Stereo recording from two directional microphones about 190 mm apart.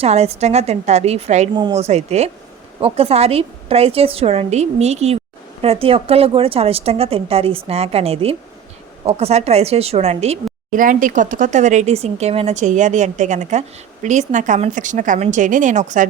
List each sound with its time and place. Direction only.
0.0 s a woman's voice: 35° right (ahead or behind)